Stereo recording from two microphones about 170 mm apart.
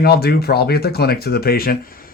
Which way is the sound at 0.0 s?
65° left (ahead or behind).